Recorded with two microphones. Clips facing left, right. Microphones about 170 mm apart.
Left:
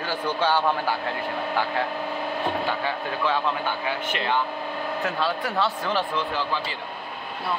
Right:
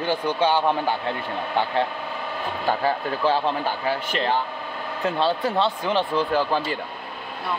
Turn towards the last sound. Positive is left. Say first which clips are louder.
# right 6 dB
turn(degrees=-45)  # may be behind; listen again after turning